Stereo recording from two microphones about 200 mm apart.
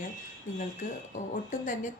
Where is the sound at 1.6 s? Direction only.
40° left (ahead or behind).